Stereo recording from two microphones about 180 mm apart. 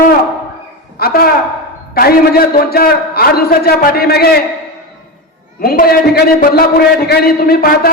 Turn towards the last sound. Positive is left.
turn(degrees=55)  # may be behind; listen again after turning